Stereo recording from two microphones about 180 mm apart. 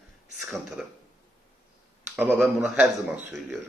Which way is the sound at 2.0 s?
10° right (ahead or behind).